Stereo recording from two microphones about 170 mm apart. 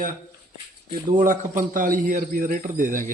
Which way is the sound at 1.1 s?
50° right (ahead or behind).